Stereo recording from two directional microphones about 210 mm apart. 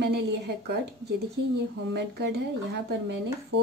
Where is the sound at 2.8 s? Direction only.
55° right (ahead or behind).